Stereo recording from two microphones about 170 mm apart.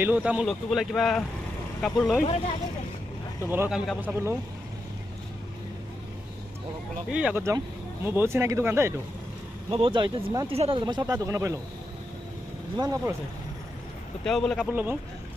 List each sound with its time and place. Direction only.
0.0 s speech: 10° right (ahead or behind)
3.4 s speech: 10° right (ahead or behind)
7.1 s speech: 5° right (ahead or behind)
9.7 s speech: 30° right (ahead or behind)
12.7 s speech: 20° right (ahead or behind)
14.2 s speech: 5° left (ahead or behind)
14.7 s speech: 10° right (ahead or behind)